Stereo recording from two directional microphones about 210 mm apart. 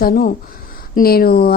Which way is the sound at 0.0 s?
45° left (ahead or behind).